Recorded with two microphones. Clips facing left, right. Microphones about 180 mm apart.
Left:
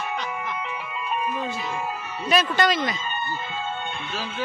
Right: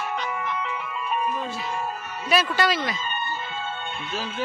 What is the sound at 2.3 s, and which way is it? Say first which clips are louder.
Speech: left 1 dB; 5° right (ahead or behind).